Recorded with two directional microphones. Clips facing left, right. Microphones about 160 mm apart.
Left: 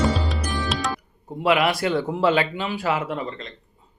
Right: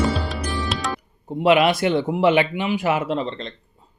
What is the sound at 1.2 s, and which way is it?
Speech, 25° right (ahead or behind).